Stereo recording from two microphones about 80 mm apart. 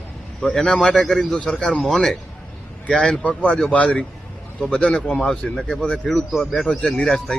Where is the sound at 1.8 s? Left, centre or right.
Centre.